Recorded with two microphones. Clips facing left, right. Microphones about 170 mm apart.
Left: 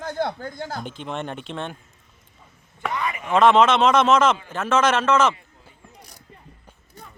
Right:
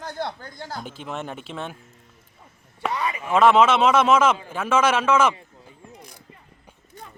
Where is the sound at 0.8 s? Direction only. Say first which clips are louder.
Left 2 dB; 5° right (ahead or behind).